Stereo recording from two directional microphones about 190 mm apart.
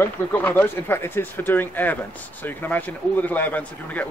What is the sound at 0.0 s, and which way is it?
Speech, 10° left (ahead or behind).